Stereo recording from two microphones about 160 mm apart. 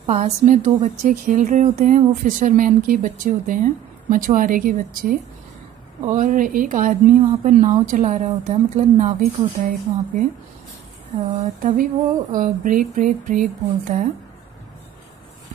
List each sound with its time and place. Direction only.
0.0 s a woman's voice: 45° right (ahead or behind)
11.6 s speech: 55° right (ahead or behind)